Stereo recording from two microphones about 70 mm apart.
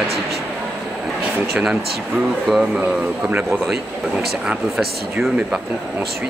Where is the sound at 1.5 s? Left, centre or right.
Centre; by 3.6 s right.